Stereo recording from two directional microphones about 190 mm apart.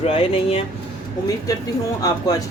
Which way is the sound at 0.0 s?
30° left (ahead or behind).